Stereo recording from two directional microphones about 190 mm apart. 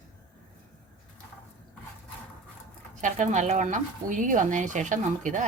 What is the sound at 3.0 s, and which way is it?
Speech, 40° right (ahead or behind).